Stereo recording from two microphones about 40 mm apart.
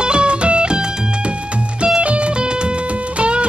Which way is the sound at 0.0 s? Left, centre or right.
Right.